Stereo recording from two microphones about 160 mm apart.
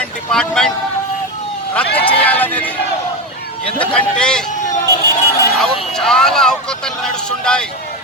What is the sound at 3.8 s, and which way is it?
Speech, 5° left (ahead or behind).